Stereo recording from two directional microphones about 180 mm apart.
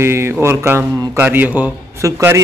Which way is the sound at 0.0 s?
15° right (ahead or behind).